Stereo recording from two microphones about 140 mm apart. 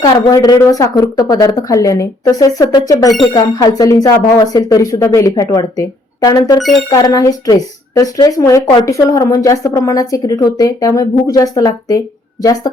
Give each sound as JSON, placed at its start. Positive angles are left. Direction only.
{"t": 0.0, "sound": "speech", "side_deg": 25}